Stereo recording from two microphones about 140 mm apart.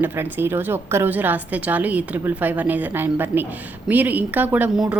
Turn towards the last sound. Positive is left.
turn(degrees=-5)  # may be behind; listen again after turning